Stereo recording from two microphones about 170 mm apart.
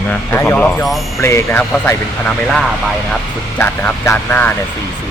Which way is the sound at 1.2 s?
15° left (ahead or behind).